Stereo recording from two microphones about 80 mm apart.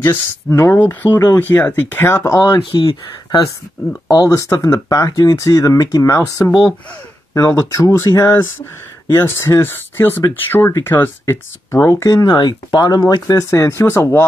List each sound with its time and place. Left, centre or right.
0.0 s speech: left
0.6 s speech: left
2.6 s speech: left
4.1 s speech: left
12.1 s speech: left